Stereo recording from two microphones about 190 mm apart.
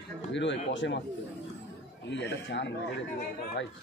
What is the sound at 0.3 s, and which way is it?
Speech, 70° left (ahead or behind).